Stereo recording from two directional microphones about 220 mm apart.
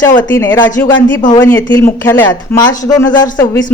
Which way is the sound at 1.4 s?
10° left (ahead or behind).